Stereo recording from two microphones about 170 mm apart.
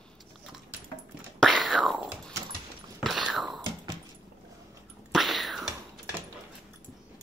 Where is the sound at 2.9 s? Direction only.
Centre (ahead or behind).